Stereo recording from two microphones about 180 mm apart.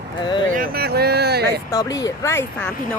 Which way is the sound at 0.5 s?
55° right (ahead or behind).